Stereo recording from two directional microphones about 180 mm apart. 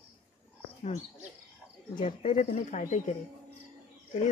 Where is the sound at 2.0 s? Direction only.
35° left (ahead or behind).